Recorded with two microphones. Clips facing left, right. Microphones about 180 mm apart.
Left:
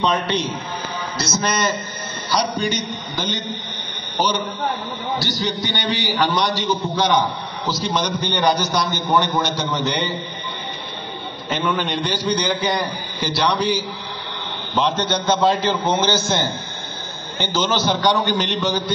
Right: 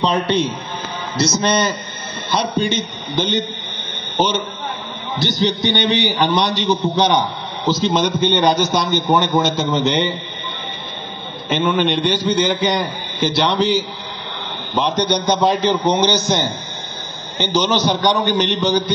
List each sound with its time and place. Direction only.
0.0 s a man's voice: 25° right (ahead or behind)
5.2 s a man's voice: 25° right (ahead or behind)
11.4 s a man's voice: 25° right (ahead or behind)